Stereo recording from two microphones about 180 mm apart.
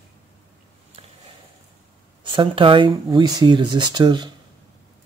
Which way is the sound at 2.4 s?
30° right (ahead or behind).